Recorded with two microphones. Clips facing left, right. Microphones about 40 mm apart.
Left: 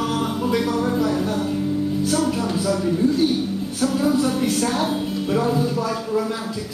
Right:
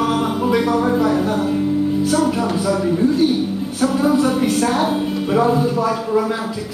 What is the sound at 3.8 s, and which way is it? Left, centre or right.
Speech, centre.